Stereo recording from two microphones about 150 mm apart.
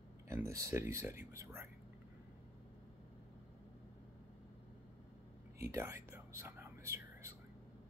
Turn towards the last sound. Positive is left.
turn(degrees=-20)  # may be behind; listen again after turning